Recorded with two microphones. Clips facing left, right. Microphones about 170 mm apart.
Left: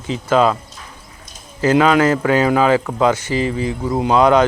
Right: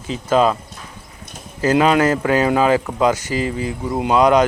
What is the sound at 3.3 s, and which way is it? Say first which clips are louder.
Speech: left 2 dB; 25° left (ahead or behind).